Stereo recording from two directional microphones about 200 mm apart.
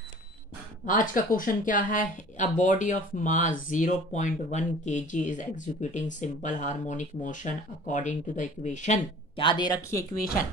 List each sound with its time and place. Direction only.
0.8 s speech: 40° left (ahead or behind); by 10.0 s 20° left (ahead or behind)